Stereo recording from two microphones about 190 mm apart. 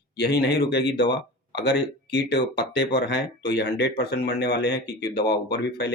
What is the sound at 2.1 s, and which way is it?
Speech, 60° left (ahead or behind).